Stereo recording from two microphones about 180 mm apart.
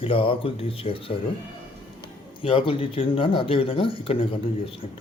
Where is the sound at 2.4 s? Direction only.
30° left (ahead or behind).